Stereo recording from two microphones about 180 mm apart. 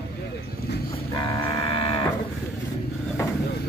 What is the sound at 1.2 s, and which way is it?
Livestock, 25° left (ahead or behind).